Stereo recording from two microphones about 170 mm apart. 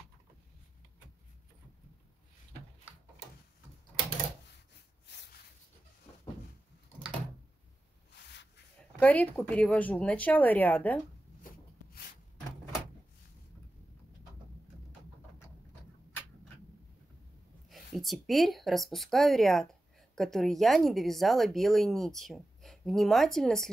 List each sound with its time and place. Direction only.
9.0 s speech: 10° left (ahead or behind)
11.4 s rub: 60° left (ahead or behind)
17.6 s speech: centre (ahead or behind)